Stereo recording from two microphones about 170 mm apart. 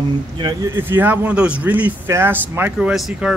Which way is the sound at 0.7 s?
10° right (ahead or behind).